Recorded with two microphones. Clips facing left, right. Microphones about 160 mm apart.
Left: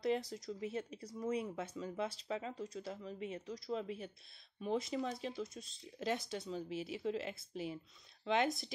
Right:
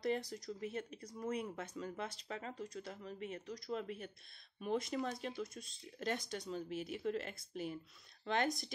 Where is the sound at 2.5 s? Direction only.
30° left (ahead or behind).